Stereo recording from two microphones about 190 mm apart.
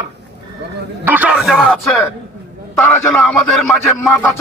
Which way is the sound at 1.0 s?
10° right (ahead or behind).